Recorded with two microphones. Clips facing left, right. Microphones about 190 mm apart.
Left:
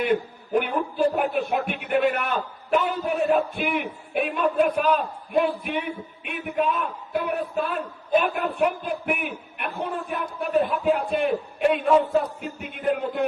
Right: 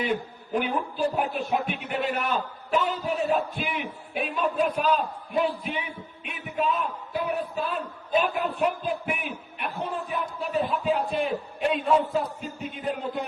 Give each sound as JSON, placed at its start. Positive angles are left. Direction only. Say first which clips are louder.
{"t": 0.0, "sound": "a man's voice", "louder": "left 5 dB", "side_deg": 55}